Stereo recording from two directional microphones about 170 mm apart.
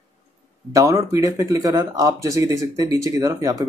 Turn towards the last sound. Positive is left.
turn(degrees=-20)  # may be behind; listen again after turning